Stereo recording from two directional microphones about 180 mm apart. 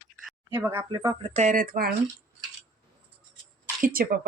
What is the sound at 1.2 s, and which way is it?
Speech, 40° right (ahead or behind).